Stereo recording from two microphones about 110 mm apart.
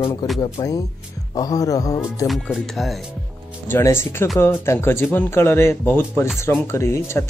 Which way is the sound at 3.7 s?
20° left (ahead or behind).